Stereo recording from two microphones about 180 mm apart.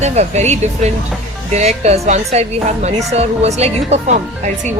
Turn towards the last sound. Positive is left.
turn(degrees=-40)  # may be behind; listen again after turning